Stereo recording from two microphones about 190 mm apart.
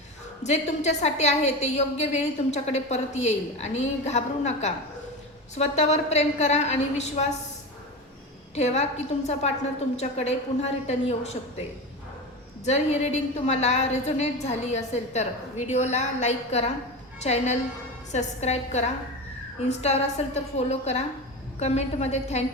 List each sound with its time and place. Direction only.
0.4 s a woman's voice: 35° left (ahead or behind)
8.5 s a woman's voice: 35° left (ahead or behind)
12.6 s a woman's voice: 35° left (ahead or behind)